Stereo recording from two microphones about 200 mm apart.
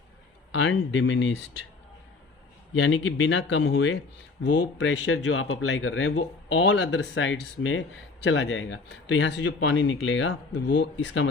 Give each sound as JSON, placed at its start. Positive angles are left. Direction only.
{"t": 0.5, "sound": "speech", "side_deg": 75}
{"t": 2.7, "sound": "speech", "side_deg": 70}